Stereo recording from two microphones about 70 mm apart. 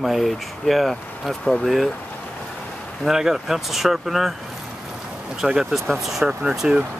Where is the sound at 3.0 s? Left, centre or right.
Centre.